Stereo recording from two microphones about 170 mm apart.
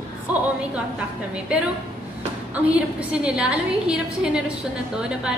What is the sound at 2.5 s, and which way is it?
A woman's voice, 10° right (ahead or behind).